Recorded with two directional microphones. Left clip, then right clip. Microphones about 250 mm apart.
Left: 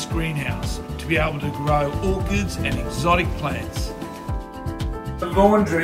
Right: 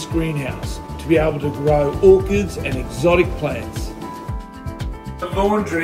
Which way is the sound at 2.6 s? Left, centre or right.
Left.